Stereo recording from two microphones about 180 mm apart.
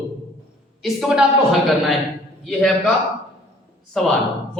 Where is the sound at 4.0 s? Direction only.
Centre (ahead or behind).